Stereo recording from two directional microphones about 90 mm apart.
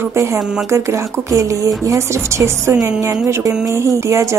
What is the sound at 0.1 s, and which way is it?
A woman's voice, 30° right (ahead or behind).